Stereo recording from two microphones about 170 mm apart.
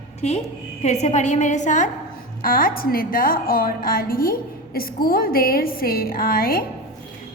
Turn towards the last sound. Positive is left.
turn(degrees=60)  # may be behind; listen again after turning